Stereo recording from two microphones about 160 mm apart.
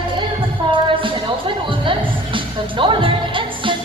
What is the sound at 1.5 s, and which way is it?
Music, 30° right (ahead or behind).